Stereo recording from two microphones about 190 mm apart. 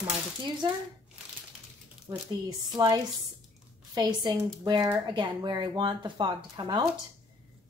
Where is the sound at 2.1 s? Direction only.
15° right (ahead or behind).